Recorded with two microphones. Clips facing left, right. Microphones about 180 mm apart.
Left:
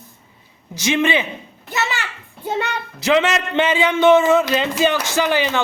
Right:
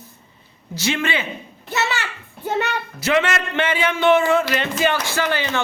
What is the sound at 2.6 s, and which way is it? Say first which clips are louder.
A man's voice: right 1 dB; 15° left (ahead or behind).